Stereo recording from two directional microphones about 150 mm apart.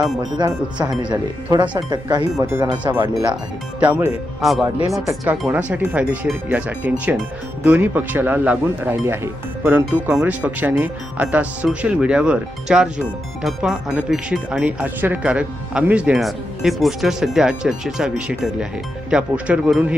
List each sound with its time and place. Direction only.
0.3 s speech: 30° right (ahead or behind)
2.4 s speech: 15° right (ahead or behind)
5.0 s speech: 20° right (ahead or behind)